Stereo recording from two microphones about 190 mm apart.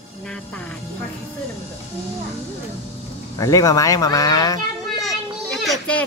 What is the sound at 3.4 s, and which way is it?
Speech, 20° left (ahead or behind).